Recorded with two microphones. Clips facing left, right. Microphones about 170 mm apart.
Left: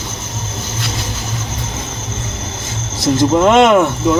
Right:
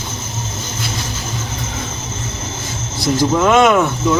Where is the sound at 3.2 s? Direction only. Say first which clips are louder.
Left 2 dB; 25° left (ahead or behind).